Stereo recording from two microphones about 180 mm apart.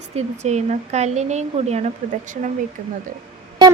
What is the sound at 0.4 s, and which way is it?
Speech, 40° right (ahead or behind).